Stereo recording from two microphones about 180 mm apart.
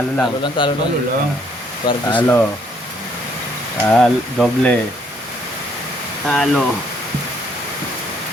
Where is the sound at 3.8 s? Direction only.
Centre (ahead or behind).